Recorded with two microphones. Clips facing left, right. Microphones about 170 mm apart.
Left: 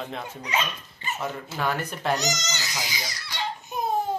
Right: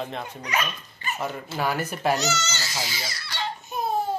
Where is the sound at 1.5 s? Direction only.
5° right (ahead or behind).